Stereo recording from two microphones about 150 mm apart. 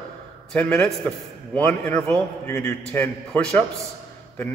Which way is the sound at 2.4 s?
20° left (ahead or behind).